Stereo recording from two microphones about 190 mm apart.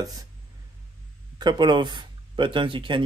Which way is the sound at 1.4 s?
20° right (ahead or behind).